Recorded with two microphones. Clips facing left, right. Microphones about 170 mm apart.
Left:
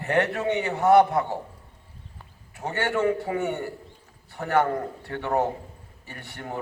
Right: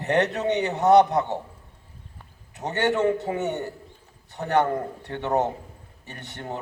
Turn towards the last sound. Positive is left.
turn(degrees=-20)  # may be behind; listen again after turning